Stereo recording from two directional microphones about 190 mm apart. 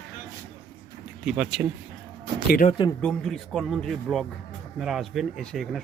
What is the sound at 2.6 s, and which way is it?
Speech, 25° left (ahead or behind).